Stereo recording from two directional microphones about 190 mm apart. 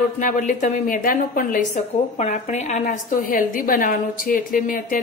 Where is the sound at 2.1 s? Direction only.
35° left (ahead or behind).